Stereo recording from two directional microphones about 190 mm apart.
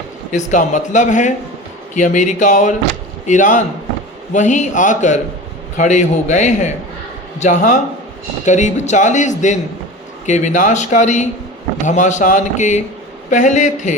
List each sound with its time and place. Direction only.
0.3 s a man's voice: 40° left (ahead or behind)